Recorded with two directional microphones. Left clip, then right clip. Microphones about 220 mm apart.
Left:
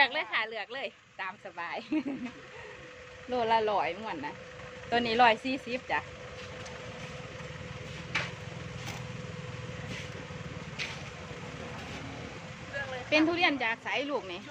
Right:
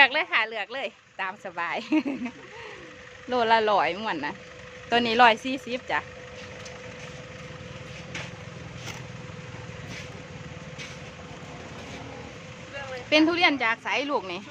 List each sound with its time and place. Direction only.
0.0 s speech: 25° right (ahead or behind)
3.2 s speech: 25° right (ahead or behind)
13.1 s speech: 20° right (ahead or behind)